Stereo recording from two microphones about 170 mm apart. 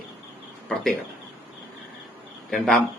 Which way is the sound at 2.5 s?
Centre (ahead or behind).